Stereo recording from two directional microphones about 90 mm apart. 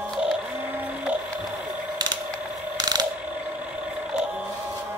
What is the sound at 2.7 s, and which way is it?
Mechanisms, 50° right (ahead or behind).